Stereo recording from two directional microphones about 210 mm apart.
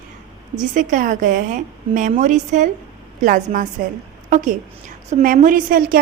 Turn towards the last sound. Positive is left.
turn(degrees=-45)  # may be behind; listen again after turning